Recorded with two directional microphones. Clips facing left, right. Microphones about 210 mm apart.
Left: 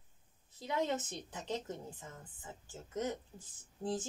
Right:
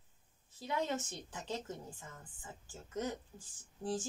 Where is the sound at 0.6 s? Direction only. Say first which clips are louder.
Left 2 dB; 20° left (ahead or behind).